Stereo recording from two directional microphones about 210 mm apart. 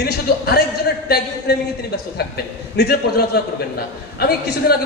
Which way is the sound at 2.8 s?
50° left (ahead or behind).